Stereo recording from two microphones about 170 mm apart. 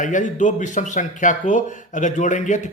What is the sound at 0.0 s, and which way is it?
A man's voice, 50° left (ahead or behind).